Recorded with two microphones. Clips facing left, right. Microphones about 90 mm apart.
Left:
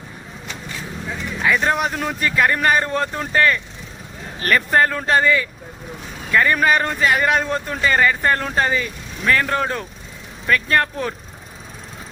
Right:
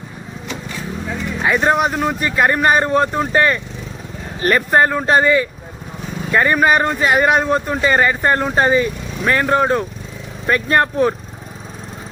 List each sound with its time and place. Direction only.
1.4 s speech: 20° right (ahead or behind)